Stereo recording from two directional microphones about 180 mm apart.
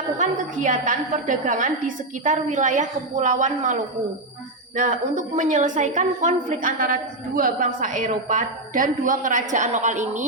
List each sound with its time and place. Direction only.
0.2 s a woman's voice: 45° right (ahead or behind)